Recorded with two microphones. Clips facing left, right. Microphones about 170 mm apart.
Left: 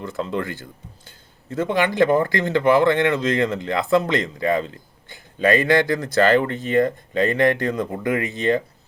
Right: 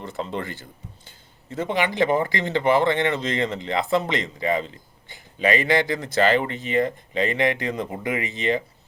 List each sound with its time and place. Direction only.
0.0 s speech: 50° left (ahead or behind)